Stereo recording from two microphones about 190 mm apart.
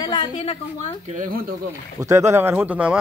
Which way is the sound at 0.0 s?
25° left (ahead or behind).